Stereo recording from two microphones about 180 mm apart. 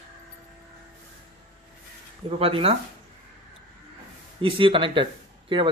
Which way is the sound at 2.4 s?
30° right (ahead or behind).